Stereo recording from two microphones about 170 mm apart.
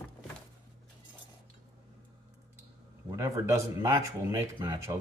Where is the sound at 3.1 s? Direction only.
20° right (ahead or behind).